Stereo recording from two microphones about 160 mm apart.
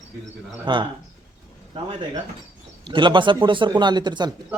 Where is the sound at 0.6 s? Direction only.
30° right (ahead or behind).